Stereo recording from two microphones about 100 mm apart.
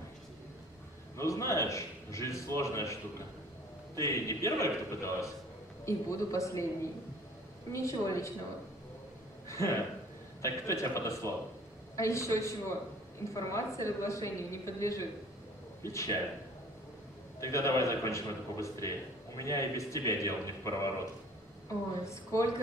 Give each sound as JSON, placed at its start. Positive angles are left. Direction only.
{"t": 1.1, "sound": "a man's voice", "side_deg": 30}
{"t": 9.5, "sound": "a man's voice", "side_deg": 30}
{"t": 17.4, "sound": "a man's voice", "side_deg": 30}
{"t": 22.0, "sound": "speech", "side_deg": 30}